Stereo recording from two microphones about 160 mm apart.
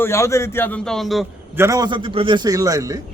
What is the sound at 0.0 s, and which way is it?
A man's voice, 15° left (ahead or behind).